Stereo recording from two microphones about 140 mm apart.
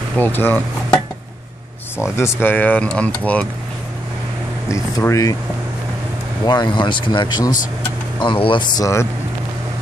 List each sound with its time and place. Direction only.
0.2 s speech: 15° left (ahead or behind)
2.0 s speech: 20° left (ahead or behind)
4.6 s speech: 20° left (ahead or behind)
6.4 s speech: 30° left (ahead or behind)